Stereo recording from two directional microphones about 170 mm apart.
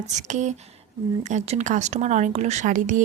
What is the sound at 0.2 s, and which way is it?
A woman's voice, 45° right (ahead or behind).